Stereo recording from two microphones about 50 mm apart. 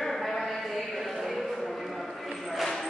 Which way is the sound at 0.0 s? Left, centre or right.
Centre.